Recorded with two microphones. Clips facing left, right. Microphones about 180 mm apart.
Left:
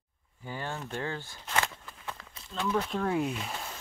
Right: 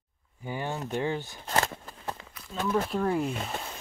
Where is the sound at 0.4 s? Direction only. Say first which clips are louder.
Right 4 dB; 15° right (ahead or behind).